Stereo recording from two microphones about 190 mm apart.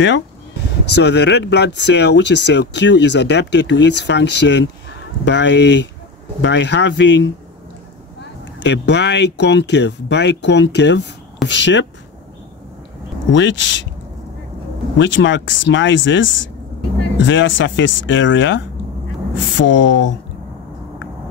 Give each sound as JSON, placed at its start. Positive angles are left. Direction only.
{"t": 0.9, "sound": "speech", "side_deg": 65}
{"t": 8.5, "sound": "speech", "side_deg": 65}
{"t": 13.3, "sound": "speech", "side_deg": 75}
{"t": 15.0, "sound": "speech", "side_deg": 75}